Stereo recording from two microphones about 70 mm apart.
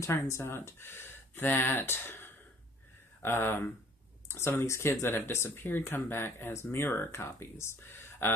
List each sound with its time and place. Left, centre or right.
0.0 s speech: left